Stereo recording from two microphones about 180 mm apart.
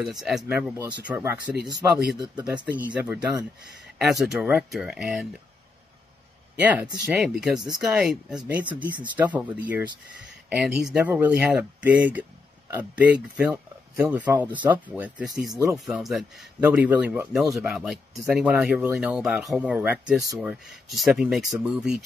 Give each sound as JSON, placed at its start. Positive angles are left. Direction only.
{"t": 0.0, "sound": "speech", "side_deg": 0}
{"t": 2.1, "sound": "speech", "side_deg": -25}
{"t": 2.4, "sound": "speech", "side_deg": -5}
{"t": 6.6, "sound": "speech", "side_deg": -10}